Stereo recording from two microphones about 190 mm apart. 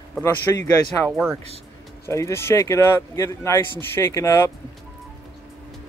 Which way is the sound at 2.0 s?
15° left (ahead or behind).